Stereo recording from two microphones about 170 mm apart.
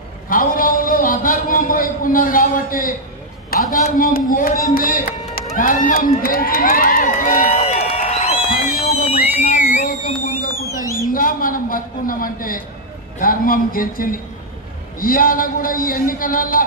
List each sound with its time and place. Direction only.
0.3 s a man's voice: 55° left (ahead or behind)
4.7 s run: 55° left (ahead or behind)
9.0 s a sound: 40° left (ahead or behind)
11.1 s a man's voice: 55° left (ahead or behind)